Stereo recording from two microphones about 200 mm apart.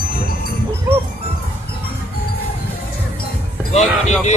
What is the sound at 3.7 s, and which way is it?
Speech, 35° left (ahead or behind).